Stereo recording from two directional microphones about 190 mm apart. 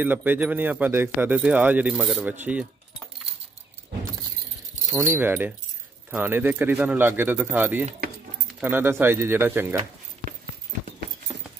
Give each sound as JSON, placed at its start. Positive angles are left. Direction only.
{"t": 0.0, "sound": "speech", "side_deg": -10}
{"t": 4.9, "sound": "speech", "side_deg": -10}